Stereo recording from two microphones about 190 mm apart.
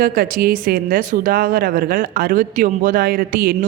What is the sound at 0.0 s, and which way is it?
Speech, 50° right (ahead or behind).